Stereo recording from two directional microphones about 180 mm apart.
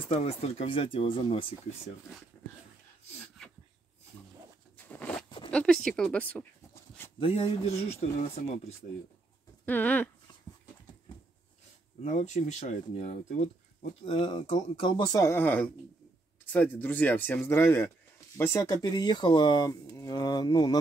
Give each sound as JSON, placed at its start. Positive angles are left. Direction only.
{"t": 0.1, "sound": "speech", "side_deg": 35}
{"t": 4.7, "sound": "zipper", "side_deg": 10}
{"t": 5.5, "sound": "writing", "side_deg": 5}
{"t": 7.2, "sound": "speech", "side_deg": 30}
{"t": 9.7, "sound": "speech", "side_deg": 10}
{"t": 12.0, "sound": "speech", "side_deg": 40}
{"t": 14.0, "sound": "speech", "side_deg": 30}